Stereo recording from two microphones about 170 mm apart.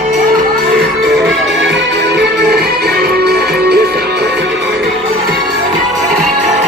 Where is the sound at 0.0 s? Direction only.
50° right (ahead or behind).